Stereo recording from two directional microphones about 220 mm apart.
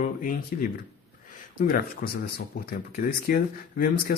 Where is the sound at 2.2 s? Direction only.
40° left (ahead or behind).